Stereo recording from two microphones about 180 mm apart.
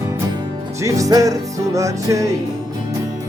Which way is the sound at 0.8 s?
15° right (ahead or behind).